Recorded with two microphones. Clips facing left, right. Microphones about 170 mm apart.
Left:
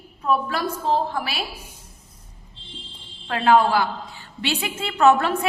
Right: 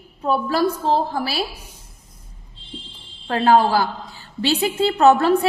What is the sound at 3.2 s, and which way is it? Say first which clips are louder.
A woman's voice: right 2 dB; 35° right (ahead or behind).